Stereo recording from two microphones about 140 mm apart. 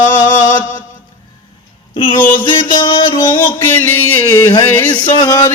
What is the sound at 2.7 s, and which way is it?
Music, 35° left (ahead or behind).